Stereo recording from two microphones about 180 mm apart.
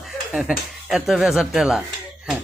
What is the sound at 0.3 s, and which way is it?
A man's voice, 5° right (ahead or behind).